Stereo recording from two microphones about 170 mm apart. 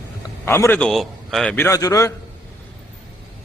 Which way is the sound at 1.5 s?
15° left (ahead or behind).